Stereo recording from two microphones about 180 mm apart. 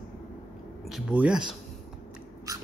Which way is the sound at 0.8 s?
5° right (ahead or behind).